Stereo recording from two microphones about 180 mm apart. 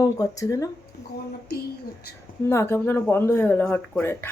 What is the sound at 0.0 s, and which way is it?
Speech, 20° left (ahead or behind).